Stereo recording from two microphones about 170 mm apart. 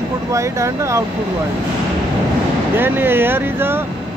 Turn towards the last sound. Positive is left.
turn(degrees=-10)  # may be behind; listen again after turning